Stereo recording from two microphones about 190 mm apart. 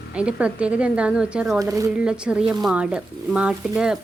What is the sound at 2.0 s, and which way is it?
Speech, 5° right (ahead or behind).